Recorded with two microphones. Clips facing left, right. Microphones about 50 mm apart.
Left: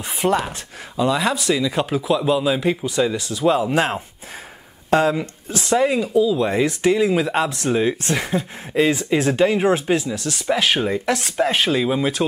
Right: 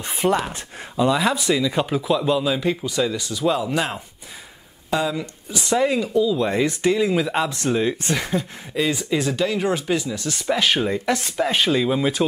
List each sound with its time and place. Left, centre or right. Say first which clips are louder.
0.2 s speech: left 1 dB; centre
3.5 s speech: left 4 dB; left
5.7 s speech: left 2 dB; centre
8.7 s speech: left 4 dB; left
9.9 s speech: left 2 dB; centre